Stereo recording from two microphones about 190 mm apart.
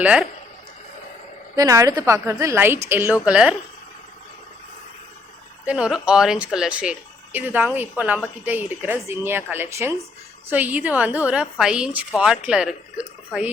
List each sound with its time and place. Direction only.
0.0 s a woman's voice: 5° right (ahead or behind)
1.5 s a woman's voice: 15° right (ahead or behind)
5.6 s a woman's voice: 5° right (ahead or behind)